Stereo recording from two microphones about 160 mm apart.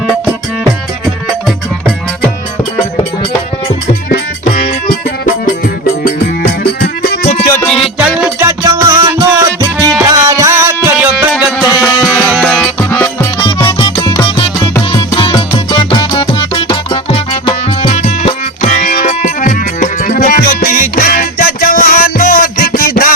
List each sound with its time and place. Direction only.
4.1 s music: 65° left (ahead or behind)
6.6 s music: 90° left
7.9 s music: 10° right (ahead or behind)
8.4 s music: 20° right (ahead or behind)
11.9 s music: 15° left (ahead or behind)
13.7 s music: 35° left (ahead or behind); by 23.1 s 60° left (ahead or behind)